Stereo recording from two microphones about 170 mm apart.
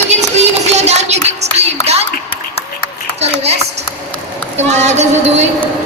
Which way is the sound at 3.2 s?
40° right (ahead or behind).